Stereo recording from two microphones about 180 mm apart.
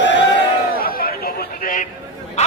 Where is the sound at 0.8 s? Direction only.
55° left (ahead or behind).